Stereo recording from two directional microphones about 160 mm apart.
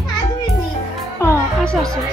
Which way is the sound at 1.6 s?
5° left (ahead or behind).